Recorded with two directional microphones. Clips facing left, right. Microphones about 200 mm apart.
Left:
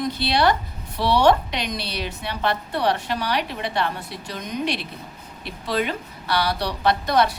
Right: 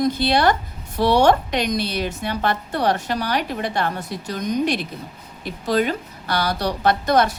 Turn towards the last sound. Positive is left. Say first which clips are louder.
# right 2 dB
turn(degrees=-45)  # may be behind; listen again after turning